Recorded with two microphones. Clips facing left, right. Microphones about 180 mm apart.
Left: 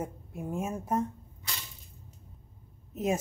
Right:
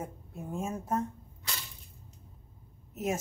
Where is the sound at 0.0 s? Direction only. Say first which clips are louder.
Left 4 dB; 10° left (ahead or behind).